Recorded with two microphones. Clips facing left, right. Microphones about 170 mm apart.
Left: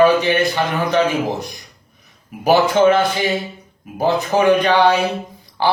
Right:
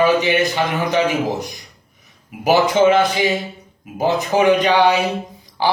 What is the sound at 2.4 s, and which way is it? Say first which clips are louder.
A man's voice: left 1 dB; 15° right (ahead or behind).